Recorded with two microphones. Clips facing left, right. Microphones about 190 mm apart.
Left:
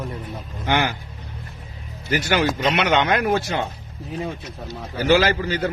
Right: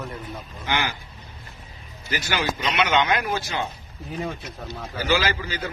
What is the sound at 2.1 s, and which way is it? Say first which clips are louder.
Speech: left 6 dB; 50° left (ahead or behind).